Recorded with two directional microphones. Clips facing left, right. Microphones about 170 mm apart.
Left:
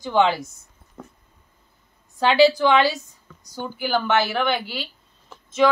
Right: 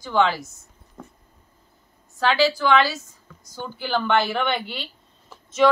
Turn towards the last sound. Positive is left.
turn(degrees=0)  # may be behind; listen again after turning